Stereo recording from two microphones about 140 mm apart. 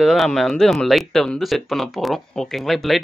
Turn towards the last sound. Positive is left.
turn(degrees=0)  # may be behind; listen again after turning